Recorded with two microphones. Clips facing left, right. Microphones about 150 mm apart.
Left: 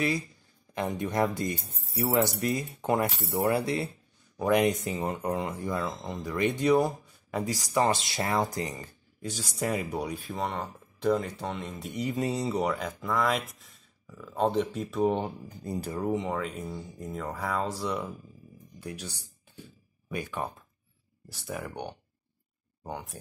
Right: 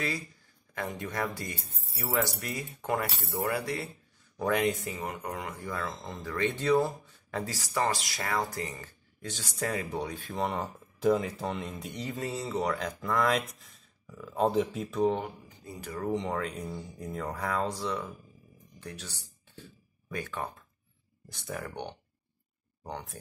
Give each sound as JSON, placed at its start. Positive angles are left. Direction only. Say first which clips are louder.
{"t": 0.7, "sound": "speech", "louder": "left 6 dB", "side_deg": 20}
{"t": 10.3, "sound": "speech", "louder": "right 4 dB", "side_deg": -5}
{"t": 12.0, "sound": "speech", "louder": "left 6 dB", "side_deg": 15}
{"t": 15.4, "sound": "speech", "louder": "left 9 dB", "side_deg": 40}
{"t": 16.0, "sound": "speech", "louder": "even", "side_deg": 5}
{"t": 18.8, "sound": "a sound", "louder": "left 4 dB", "side_deg": 10}
{"t": 21.3, "sound": "speech", "louder": "left 1 dB", "side_deg": 5}